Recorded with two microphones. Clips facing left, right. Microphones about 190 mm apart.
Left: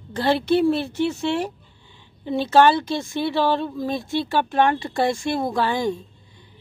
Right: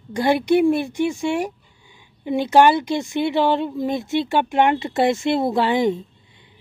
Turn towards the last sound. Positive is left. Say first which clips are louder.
# right 4 dB
turn(degrees=-20)  # may be behind; listen again after turning